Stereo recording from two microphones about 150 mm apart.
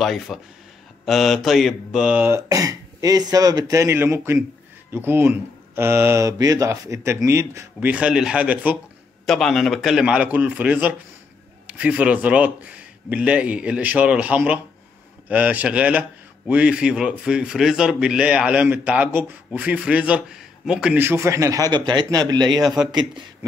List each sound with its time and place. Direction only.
0.0 s a man's voice: centre (ahead or behind)
9.2 s a man's voice: centre (ahead or behind); by 22.6 s 30° right (ahead or behind)
22.6 s speech: centre (ahead or behind)